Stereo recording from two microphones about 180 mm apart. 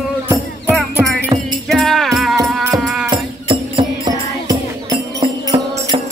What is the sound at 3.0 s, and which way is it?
Music, 25° right (ahead or behind).